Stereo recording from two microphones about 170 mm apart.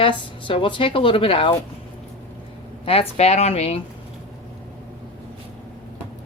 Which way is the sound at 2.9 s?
35° left (ahead or behind).